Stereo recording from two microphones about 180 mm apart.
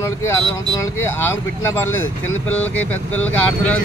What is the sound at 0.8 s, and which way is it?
Speech, 15° left (ahead or behind).